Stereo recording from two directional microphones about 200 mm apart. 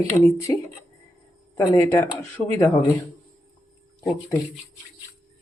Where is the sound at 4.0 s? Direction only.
15° left (ahead or behind).